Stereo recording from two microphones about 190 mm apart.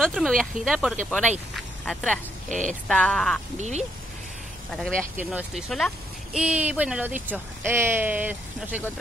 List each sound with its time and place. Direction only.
0.0 s speech: centre (ahead or behind)
1.5 s a sound: centre (ahead or behind)
2.9 s speech: 5° left (ahead or behind)
3.5 s speech: 35° right (ahead or behind)
4.6 s speech: 5° left (ahead or behind)